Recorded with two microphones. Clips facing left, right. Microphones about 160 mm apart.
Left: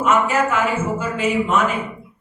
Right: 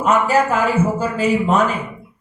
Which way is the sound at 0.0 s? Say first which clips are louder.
Right 2 dB; 35° right (ahead or behind).